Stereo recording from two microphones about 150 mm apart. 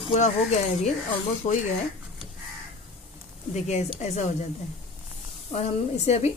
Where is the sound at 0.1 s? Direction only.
50° left (ahead or behind).